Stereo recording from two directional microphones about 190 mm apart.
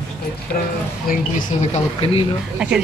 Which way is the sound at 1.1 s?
45° left (ahead or behind).